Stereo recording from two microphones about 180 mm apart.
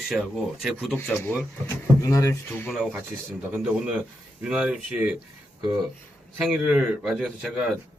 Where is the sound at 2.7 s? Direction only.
5° right (ahead or behind).